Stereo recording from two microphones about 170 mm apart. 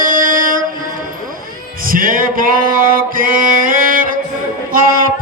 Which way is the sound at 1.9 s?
55° right (ahead or behind).